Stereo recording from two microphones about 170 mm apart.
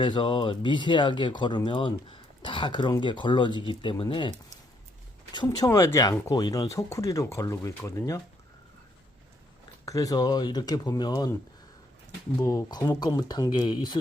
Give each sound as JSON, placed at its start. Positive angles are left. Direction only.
{"t": 0.0, "sound": "speech", "side_deg": 30}
{"t": 9.8, "sound": "speech", "side_deg": 20}
{"t": 12.4, "sound": "speech", "side_deg": 20}